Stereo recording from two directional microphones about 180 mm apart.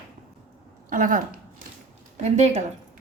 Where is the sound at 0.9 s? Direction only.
50° right (ahead or behind).